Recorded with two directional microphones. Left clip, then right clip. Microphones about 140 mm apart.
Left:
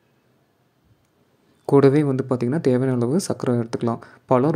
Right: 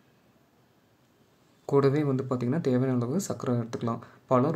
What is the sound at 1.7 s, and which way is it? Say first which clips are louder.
Speech: left 8 dB; 40° left (ahead or behind).